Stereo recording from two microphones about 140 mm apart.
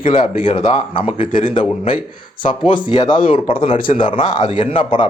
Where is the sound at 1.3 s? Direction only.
75° left (ahead or behind).